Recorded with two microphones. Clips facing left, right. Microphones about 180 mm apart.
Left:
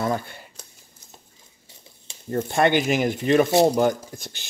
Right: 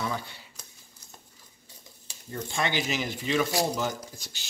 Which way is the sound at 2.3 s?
60° left (ahead or behind).